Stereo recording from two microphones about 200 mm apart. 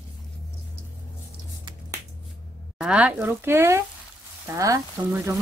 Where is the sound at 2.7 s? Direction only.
5° right (ahead or behind).